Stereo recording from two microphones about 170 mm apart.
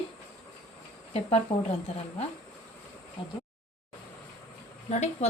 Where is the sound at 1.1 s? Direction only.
35° left (ahead or behind).